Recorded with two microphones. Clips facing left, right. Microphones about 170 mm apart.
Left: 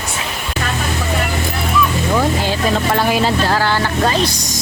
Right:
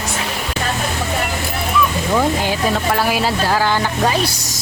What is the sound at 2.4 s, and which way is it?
Speech, 10° right (ahead or behind).